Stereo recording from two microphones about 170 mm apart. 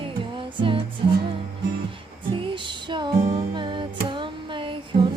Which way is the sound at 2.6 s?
30° right (ahead or behind).